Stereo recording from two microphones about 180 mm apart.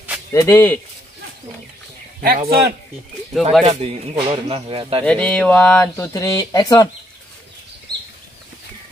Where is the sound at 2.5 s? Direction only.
60° right (ahead or behind).